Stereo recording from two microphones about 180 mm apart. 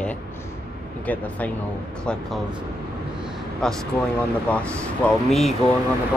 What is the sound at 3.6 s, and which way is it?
Speech, 5° left (ahead or behind).